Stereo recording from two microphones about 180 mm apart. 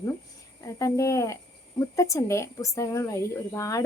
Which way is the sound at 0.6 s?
15° left (ahead or behind).